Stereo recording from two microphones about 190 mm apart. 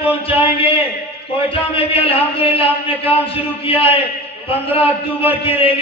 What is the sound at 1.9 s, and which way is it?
A man's voice, 30° left (ahead or behind).